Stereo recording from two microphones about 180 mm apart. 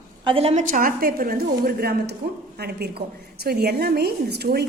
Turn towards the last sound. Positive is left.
turn(degrees=-65)  # may be behind; listen again after turning